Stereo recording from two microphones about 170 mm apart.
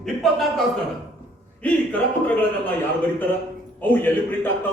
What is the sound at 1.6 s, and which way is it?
Speech, 10° left (ahead or behind).